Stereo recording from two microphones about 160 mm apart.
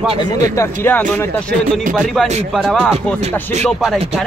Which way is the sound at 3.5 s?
45° right (ahead or behind).